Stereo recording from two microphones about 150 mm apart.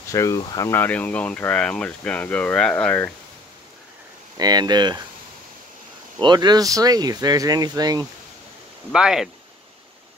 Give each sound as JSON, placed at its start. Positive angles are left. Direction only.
{"t": 0.1, "sound": "speech", "side_deg": 20}
{"t": 0.7, "sound": "speech", "side_deg": 10}
{"t": 4.4, "sound": "speech", "side_deg": -25}
{"t": 6.1, "sound": "speech", "side_deg": -30}
{"t": 8.9, "sound": "speech", "side_deg": -5}